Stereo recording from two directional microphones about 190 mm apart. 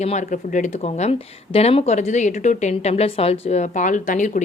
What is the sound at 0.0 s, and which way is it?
Speech, 40° left (ahead or behind).